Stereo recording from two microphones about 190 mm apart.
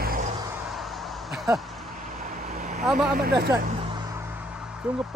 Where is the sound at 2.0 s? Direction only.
45° right (ahead or behind).